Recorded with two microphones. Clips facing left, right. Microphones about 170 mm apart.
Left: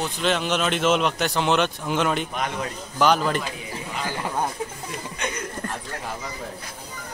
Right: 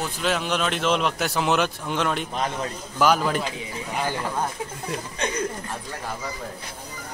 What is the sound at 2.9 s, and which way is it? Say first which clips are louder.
Speech: even; 5° right (ahead or behind).